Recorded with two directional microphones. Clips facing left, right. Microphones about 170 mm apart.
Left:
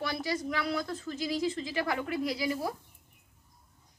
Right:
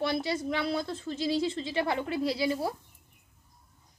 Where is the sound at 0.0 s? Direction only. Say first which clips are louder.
Right 3 dB; 25° right (ahead or behind).